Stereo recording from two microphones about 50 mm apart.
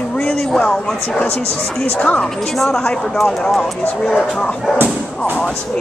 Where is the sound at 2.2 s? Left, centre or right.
Centre.